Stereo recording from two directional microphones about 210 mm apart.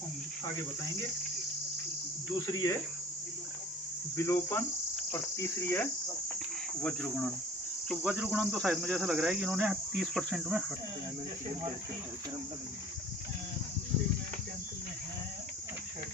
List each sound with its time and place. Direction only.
2.5 s cricket: 20° left (ahead or behind)
4.3 s cricket: 10° left (ahead or behind)